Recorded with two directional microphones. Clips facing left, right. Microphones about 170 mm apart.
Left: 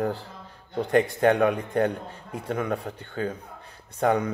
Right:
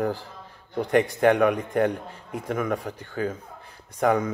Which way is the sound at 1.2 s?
30° left (ahead or behind).